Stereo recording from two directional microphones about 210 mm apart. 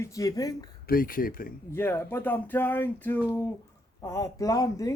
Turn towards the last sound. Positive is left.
turn(degrees=15)  # may be behind; listen again after turning